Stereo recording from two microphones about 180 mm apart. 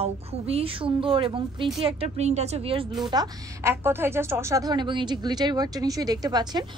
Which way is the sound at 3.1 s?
20° right (ahead or behind).